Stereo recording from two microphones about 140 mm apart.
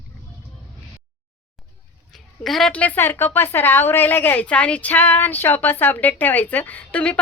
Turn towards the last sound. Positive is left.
turn(degrees=10)  # may be behind; listen again after turning